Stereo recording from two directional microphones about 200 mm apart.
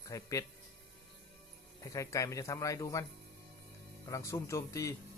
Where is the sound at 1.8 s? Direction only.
15° left (ahead or behind).